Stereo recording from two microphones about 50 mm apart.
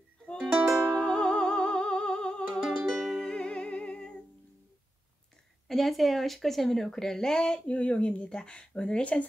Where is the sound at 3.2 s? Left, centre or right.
Centre.